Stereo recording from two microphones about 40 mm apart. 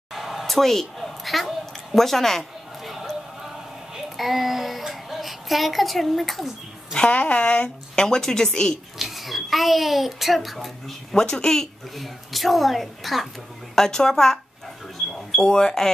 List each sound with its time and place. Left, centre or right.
0.1 s a sound: centre
3.9 s child singing: centre
7.1 s a woman's voice: left
7.9 s speech: centre
8.9 s a child's voice: centre
11.1 s speech: centre
12.0 s a child's voice: centre
13.7 s speech: centre
15.4 s speech: centre